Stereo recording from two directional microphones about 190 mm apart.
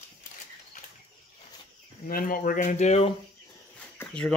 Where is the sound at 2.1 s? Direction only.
50° left (ahead or behind).